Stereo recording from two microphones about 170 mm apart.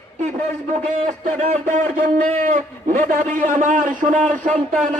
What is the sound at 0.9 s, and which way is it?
A man's voice, 45° right (ahead or behind).